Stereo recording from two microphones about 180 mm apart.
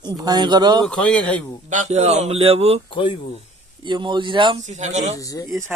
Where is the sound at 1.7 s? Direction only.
40° right (ahead or behind).